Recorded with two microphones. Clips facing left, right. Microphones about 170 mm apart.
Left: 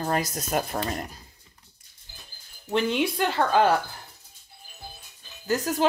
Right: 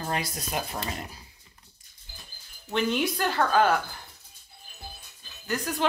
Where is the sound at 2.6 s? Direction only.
30° left (ahead or behind).